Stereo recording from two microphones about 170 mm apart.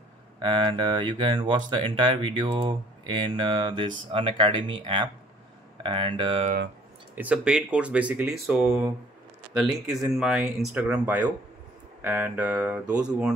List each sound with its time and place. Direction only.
0.4 s speech: 30° right (ahead or behind)
7.2 s speech: 5° right (ahead or behind)